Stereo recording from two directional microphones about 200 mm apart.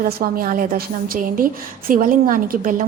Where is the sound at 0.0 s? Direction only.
45° right (ahead or behind).